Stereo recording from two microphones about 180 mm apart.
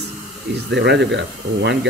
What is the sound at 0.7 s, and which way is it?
Speech, 75° right (ahead or behind).